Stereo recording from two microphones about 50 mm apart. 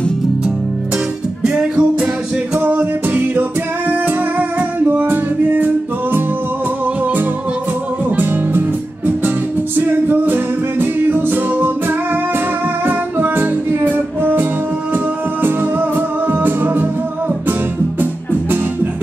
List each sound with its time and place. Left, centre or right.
1.5 s music: right
2.5 s music: right
8.2 s music: right
12.8 s music: right
16.3 s music: right